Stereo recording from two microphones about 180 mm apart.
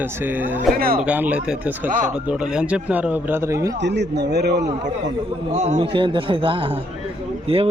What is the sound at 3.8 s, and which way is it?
Speech, 75° right (ahead or behind).